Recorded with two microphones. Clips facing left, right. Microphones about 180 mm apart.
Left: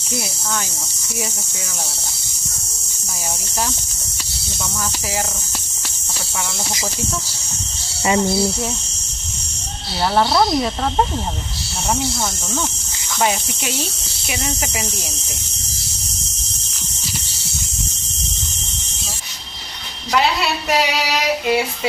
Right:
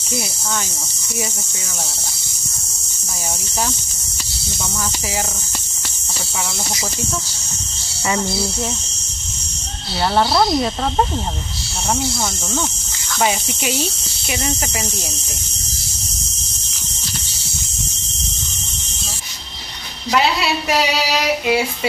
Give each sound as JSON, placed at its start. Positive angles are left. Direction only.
{"t": 8.1, "sound": "speech", "side_deg": 15}
{"t": 10.1, "sound": "speech", "side_deg": 0}
{"t": 13.2, "sound": "speech", "side_deg": 0}
{"t": 20.7, "sound": "speech", "side_deg": -5}